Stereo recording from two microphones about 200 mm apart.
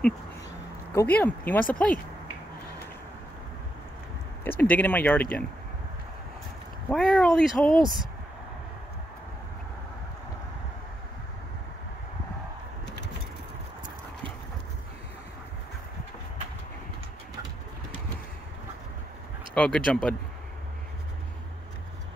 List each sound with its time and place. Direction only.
0.9 s speech: 10° left (ahead or behind)
4.5 s speech: 10° left (ahead or behind)
6.9 s speech: 5° left (ahead or behind)
12.8 s vehicle: 60° left (ahead or behind)
19.5 s speech: 5° left (ahead or behind)